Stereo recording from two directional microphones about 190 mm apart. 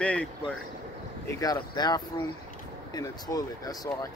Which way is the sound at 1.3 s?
20° left (ahead or behind).